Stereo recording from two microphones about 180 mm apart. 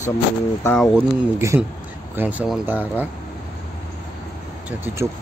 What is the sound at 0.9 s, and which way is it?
Speech, 15° right (ahead or behind).